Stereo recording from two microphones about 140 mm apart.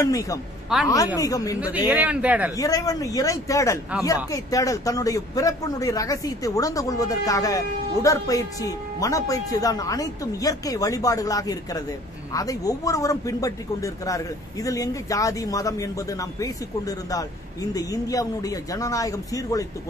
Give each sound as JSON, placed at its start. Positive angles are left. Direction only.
{"t": 0.0, "sound": "a man's voice", "side_deg": 25}
{"t": 1.6, "sound": "speech", "side_deg": -10}
{"t": 2.5, "sound": "a man's voice", "side_deg": 25}